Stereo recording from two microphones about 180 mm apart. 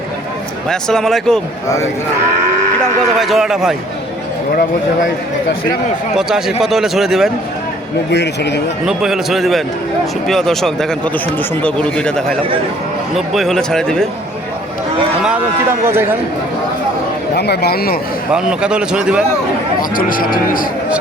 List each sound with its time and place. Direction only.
0.7 s speech: 5° left (ahead or behind)
1.6 s speech: 15° left (ahead or behind)
3.2 s speech: centre (ahead or behind)
6.6 s speech: centre (ahead or behind)
8.1 s a man's voice: 70° left (ahead or behind)
8.9 s speech: 5° right (ahead or behind)
15.9 s a man's voice: 15° right (ahead or behind)
17.3 s a man's voice: 65° left (ahead or behind)
18.3 s speech: 5° right (ahead or behind)
20.0 s speech: 50° left (ahead or behind)